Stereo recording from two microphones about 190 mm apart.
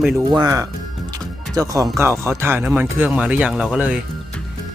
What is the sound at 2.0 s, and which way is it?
Speech, 15° right (ahead or behind).